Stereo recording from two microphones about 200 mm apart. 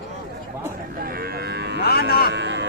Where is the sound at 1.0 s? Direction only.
50° right (ahead or behind).